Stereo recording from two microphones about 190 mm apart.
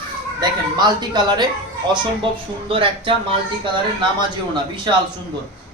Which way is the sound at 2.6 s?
30° right (ahead or behind).